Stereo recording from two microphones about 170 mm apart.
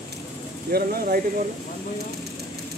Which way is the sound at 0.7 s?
65° right (ahead or behind).